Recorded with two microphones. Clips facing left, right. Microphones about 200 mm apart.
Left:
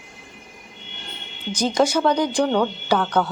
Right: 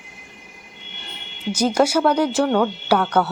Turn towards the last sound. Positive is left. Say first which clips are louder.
# right 2 dB
turn(degrees=-10)  # may be behind; listen again after turning